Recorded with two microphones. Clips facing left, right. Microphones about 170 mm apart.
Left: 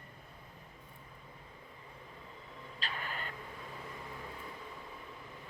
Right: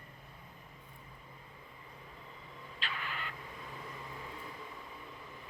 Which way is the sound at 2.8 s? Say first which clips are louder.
Even; 40° left (ahead or behind).